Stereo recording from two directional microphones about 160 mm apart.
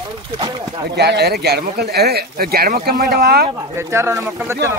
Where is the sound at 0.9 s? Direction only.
90° right.